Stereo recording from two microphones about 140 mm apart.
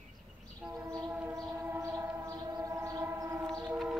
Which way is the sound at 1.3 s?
25° right (ahead or behind).